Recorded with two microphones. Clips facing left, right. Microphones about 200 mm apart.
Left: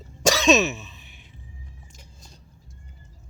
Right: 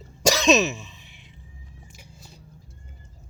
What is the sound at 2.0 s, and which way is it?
Vehicle, 10° right (ahead or behind).